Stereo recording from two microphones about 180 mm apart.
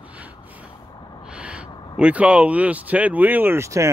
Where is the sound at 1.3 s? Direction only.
5° right (ahead or behind).